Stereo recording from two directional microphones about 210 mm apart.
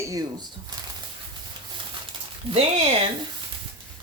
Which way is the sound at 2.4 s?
25° right (ahead or behind).